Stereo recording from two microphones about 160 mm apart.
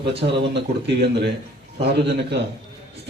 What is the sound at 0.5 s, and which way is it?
A man's voice, 90° right.